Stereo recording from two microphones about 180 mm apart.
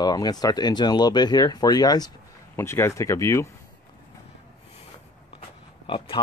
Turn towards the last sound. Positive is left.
turn(degrees=30)  # may be behind; listen again after turning